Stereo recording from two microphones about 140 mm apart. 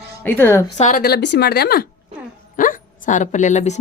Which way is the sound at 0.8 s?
70° left (ahead or behind).